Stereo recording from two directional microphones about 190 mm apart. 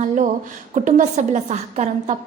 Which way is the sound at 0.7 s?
40° right (ahead or behind).